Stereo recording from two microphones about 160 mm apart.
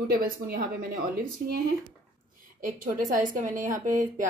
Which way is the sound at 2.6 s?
55° right (ahead or behind).